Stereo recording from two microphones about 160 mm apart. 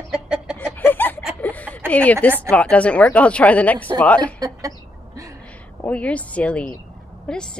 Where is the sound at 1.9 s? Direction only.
10° left (ahead or behind).